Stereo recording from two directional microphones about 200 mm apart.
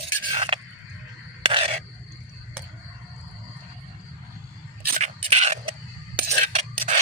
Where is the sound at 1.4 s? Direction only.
30° right (ahead or behind).